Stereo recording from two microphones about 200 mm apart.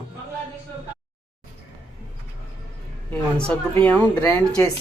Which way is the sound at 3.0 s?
5° left (ahead or behind).